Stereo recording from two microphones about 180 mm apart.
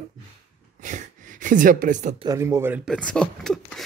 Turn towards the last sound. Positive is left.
turn(degrees=5)  # may be behind; listen again after turning